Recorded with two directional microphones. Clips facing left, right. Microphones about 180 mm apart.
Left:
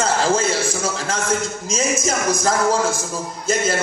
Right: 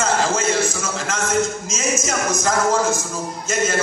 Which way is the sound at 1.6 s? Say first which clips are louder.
Left 2 dB; 30° left (ahead or behind).